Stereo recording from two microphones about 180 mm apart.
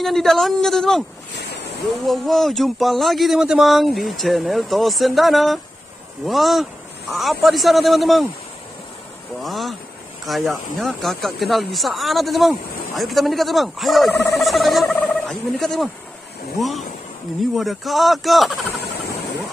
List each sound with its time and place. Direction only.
0.0 s speech: centre (ahead or behind)
1.4 s waves: 65° left (ahead or behind)
2.0 s speech: centre (ahead or behind)
9.4 s speech: centre (ahead or behind)